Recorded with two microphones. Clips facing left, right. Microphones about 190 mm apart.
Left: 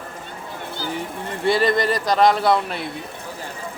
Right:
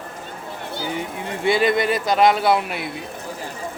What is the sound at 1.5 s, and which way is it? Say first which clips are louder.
A man's voice: even; centre (ahead or behind).